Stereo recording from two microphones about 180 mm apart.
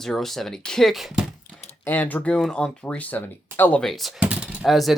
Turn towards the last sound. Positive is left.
turn(degrees=0)  # may be behind; listen again after turning